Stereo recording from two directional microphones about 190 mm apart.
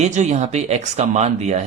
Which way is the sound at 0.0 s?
35° right (ahead or behind).